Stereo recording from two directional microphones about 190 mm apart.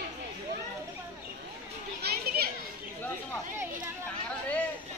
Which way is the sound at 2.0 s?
55° right (ahead or behind).